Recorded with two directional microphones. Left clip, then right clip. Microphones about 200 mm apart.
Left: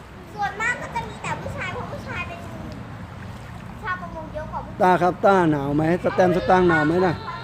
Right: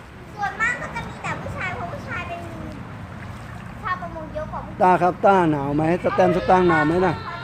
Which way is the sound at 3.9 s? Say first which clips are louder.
Right 2 dB; 30° left (ahead or behind).